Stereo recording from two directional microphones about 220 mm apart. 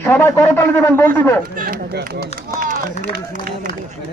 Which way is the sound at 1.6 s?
40° right (ahead or behind).